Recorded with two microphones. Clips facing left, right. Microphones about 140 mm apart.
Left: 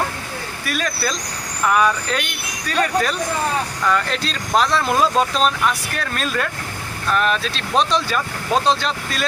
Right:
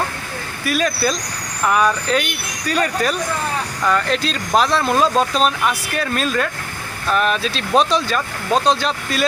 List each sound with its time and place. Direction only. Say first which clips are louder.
0.6 s speech: right 5 dB; centre (ahead or behind)